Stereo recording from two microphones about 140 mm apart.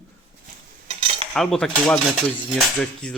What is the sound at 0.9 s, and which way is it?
Cutlery, 40° right (ahead or behind).